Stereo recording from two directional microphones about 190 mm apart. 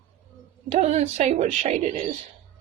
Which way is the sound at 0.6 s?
35° right (ahead or behind).